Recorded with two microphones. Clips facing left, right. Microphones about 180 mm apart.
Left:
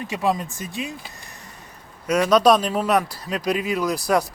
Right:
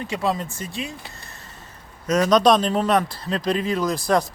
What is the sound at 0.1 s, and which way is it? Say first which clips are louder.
Speech: left 2 dB; 15° left (ahead or behind).